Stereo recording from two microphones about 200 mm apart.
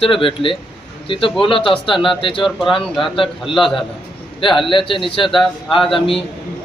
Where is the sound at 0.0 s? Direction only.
25° left (ahead or behind).